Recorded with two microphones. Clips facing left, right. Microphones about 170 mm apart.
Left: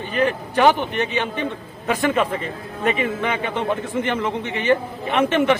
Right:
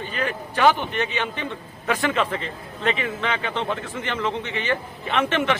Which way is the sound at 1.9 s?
15° left (ahead or behind).